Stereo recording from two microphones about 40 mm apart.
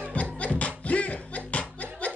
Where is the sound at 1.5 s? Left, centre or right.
Left.